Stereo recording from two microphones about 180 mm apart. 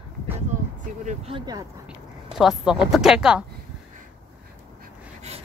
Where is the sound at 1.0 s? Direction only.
35° right (ahead or behind).